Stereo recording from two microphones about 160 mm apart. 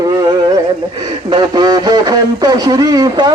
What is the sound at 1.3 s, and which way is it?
Speech, 25° right (ahead or behind).